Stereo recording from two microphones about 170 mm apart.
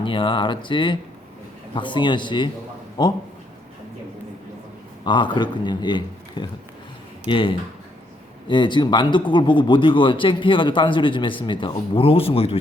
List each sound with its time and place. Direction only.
0.0 s a man's voice: 30° left (ahead or behind)
5.0 s a man's voice: 30° left (ahead or behind)